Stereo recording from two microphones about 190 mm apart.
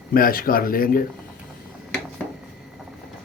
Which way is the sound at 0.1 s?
50° left (ahead or behind).